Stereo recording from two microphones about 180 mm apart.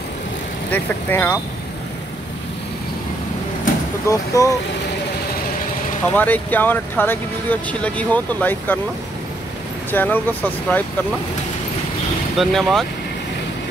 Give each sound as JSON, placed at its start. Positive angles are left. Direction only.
{"t": 0.7, "sound": "speech", "side_deg": 10}
{"t": 4.1, "sound": "speech", "side_deg": 20}
{"t": 6.1, "sound": "speech", "side_deg": 10}
{"t": 9.8, "sound": "speech", "side_deg": 10}
{"t": 12.4, "sound": "speech", "side_deg": 0}